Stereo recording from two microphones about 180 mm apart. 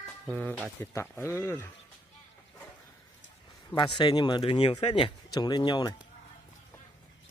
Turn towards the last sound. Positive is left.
turn(degrees=25)  # may be behind; listen again after turning